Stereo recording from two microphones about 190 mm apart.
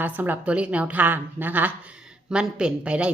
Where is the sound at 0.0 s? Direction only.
10° right (ahead or behind).